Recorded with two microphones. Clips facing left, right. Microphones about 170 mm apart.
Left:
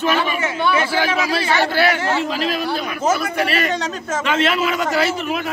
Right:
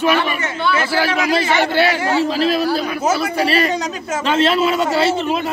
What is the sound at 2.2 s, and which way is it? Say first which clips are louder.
A man's voice: right 5 dB; 35° right (ahead or behind).